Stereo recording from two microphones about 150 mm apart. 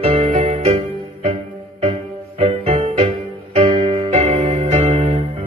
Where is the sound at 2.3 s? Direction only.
45° right (ahead or behind).